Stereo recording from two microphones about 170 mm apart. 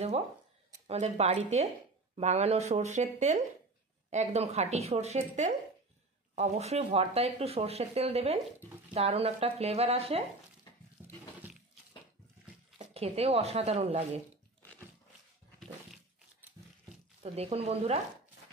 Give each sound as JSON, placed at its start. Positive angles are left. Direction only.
{"t": 0.8, "sound": "speech", "side_deg": -40}
{"t": 6.3, "sound": "speech", "side_deg": -40}
{"t": 12.7, "sound": "speech", "side_deg": -35}
{"t": 17.2, "sound": "speech", "side_deg": -35}